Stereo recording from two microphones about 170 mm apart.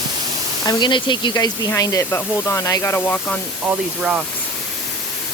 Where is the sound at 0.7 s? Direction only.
25° left (ahead or behind); by 3.4 s 10° left (ahead or behind).